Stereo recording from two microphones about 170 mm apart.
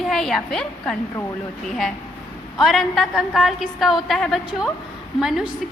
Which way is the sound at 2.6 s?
Centre (ahead or behind).